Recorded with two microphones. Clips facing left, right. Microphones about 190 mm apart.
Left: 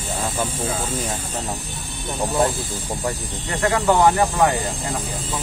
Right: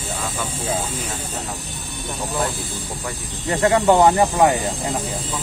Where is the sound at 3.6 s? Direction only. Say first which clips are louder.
Right 2 dB; 25° right (ahead or behind).